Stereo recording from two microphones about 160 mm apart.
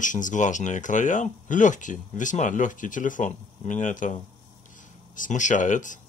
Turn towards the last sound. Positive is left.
turn(degrees=50)  # may be behind; listen again after turning